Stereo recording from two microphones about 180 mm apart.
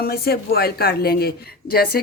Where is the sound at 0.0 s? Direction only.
55° left (ahead or behind).